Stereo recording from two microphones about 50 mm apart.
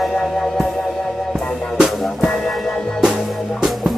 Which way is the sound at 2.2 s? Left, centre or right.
Centre.